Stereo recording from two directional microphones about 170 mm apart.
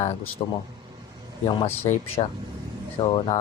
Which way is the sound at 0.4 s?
30° left (ahead or behind).